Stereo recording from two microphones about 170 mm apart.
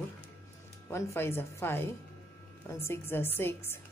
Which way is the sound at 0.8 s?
15° left (ahead or behind).